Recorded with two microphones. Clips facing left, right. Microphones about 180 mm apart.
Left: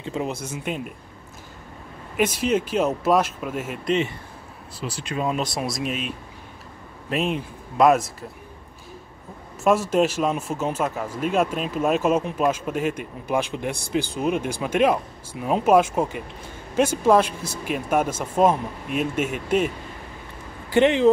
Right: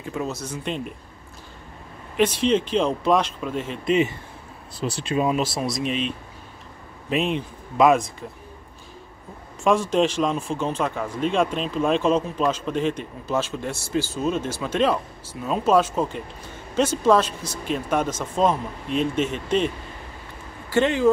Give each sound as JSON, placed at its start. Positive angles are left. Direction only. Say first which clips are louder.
{"t": 0.0, "sound": "speech", "louder": "left 1 dB", "side_deg": 25}
{"t": 0.5, "sound": "speech", "louder": "even", "side_deg": 5}
{"t": 2.1, "sound": "speech", "louder": "right 2 dB", "side_deg": 10}
{"t": 4.8, "sound": "speech", "louder": "right 4 dB", "side_deg": -35}
{"t": 5.2, "sound": "speech", "louder": "right 1 dB", "side_deg": -5}
{"t": 9.6, "sound": "speech", "louder": "even", "side_deg": 5}
{"t": 20.7, "sound": "speech", "louder": "left 2 dB", "side_deg": 20}